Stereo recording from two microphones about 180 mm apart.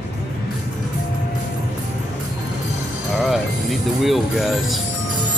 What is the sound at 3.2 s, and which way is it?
Music, centre (ahead or behind).